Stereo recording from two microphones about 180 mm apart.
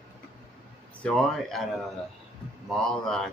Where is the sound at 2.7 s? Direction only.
Centre (ahead or behind).